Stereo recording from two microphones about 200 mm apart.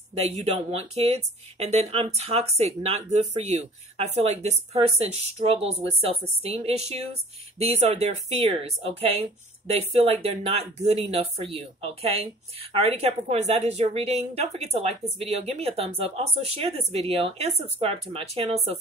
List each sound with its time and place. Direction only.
0.4 s speech: 35° right (ahead or behind)